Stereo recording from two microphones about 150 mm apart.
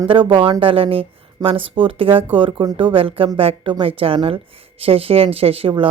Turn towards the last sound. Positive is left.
turn(degrees=-35)  # may be behind; listen again after turning